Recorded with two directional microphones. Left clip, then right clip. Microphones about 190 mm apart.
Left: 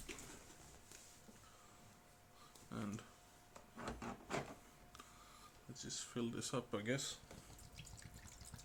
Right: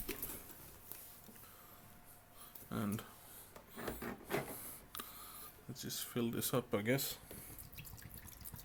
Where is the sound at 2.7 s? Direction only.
35° right (ahead or behind).